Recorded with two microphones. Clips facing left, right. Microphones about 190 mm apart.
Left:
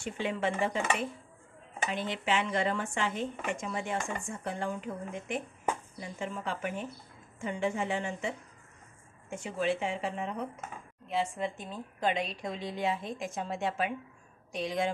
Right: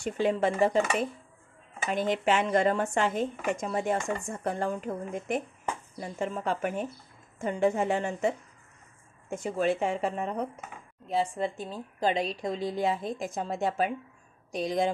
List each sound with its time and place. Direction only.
0.0 s a woman's voice: 40° right (ahead or behind)
1.9 s a woman's voice: 45° right (ahead or behind)